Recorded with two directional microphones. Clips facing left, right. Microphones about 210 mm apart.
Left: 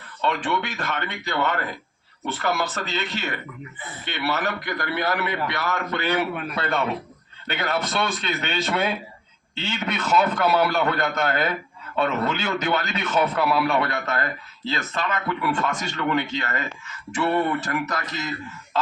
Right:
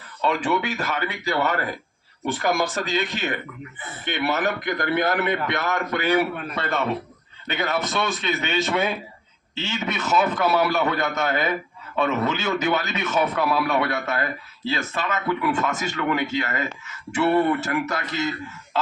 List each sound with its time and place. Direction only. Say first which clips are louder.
0.2 s a man's voice: right 2 dB; 5° right (ahead or behind)
6.3 s a man's voice: left 1 dB; centre (ahead or behind)
17.6 s a man's voice: right 2 dB; 25° right (ahead or behind)